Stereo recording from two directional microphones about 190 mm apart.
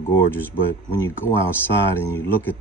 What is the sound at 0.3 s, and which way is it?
Speech, 10° left (ahead or behind).